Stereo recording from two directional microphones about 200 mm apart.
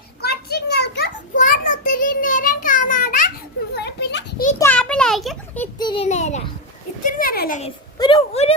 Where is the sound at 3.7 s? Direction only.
55° left (ahead or behind).